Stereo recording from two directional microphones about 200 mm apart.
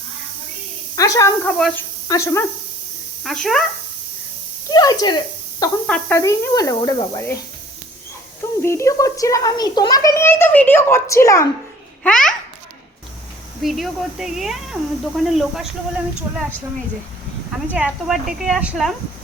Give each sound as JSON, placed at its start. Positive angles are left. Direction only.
{"t": 0.9, "sound": "speech", "side_deg": 15}
{"t": 1.5, "sound": "a child's voice", "side_deg": 5}
{"t": 3.2, "sound": "speech", "side_deg": 0}
{"t": 4.7, "sound": "speech", "side_deg": 20}
{"t": 5.8, "sound": "speech", "side_deg": 5}
{"t": 6.1, "sound": "a child's voice", "side_deg": 15}
{"t": 8.6, "sound": "a child's voice", "side_deg": 15}
{"t": 12.0, "sound": "speech", "side_deg": 5}
{"t": 13.6, "sound": "speech", "side_deg": 0}
{"t": 17.7, "sound": "speech", "side_deg": -5}